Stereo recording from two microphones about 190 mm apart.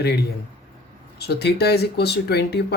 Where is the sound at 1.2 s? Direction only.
60° left (ahead or behind).